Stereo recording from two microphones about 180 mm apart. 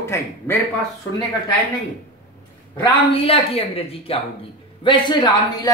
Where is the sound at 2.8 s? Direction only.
25° left (ahead or behind).